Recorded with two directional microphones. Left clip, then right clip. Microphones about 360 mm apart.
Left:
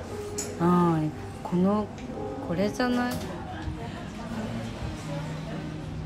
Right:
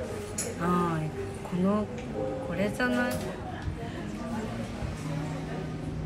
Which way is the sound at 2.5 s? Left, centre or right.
Left.